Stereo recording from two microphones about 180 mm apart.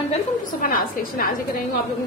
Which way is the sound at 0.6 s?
50° left (ahead or behind).